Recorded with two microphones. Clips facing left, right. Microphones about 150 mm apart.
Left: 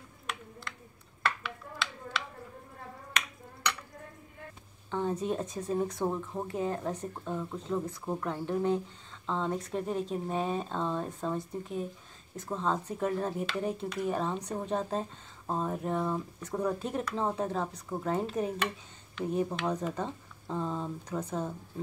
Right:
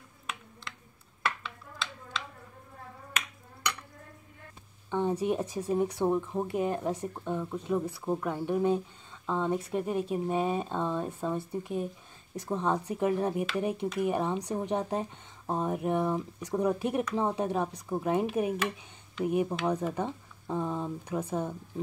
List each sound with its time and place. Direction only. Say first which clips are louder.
3.1 s finger snapping: left 1 dB; 5° right (ahead or behind)
4.9 s speech: right 3 dB; 15° right (ahead or behind)